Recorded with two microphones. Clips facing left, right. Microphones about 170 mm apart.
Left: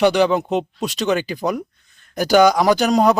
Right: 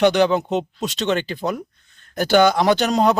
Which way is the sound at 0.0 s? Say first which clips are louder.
Left 1 dB; 10° left (ahead or behind).